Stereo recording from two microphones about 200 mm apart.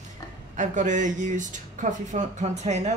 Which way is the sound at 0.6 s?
40° right (ahead or behind).